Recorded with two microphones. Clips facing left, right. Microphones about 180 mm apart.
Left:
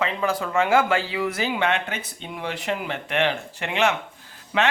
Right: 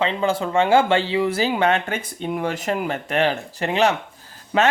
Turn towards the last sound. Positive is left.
turn(degrees=-45)  # may be behind; listen again after turning